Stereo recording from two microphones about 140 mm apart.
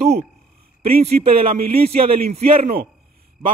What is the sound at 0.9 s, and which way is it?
A man's voice, 90° right.